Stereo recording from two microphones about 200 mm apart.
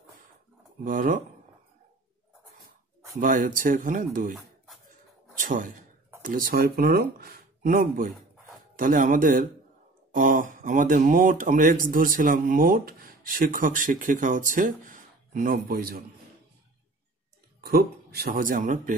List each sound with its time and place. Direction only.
0.8 s speech: 45° right (ahead or behind)
3.2 s speech: 45° right (ahead or behind)
5.4 s speech: 40° right (ahead or behind)
17.6 s speech: 50° right (ahead or behind)